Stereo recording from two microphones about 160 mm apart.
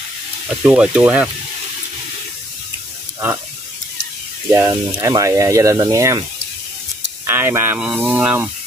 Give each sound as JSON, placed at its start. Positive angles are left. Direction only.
{"t": 0.5, "sound": "speech", "side_deg": -5}
{"t": 4.5, "sound": "speech", "side_deg": -20}
{"t": 7.2, "sound": "speech", "side_deg": -15}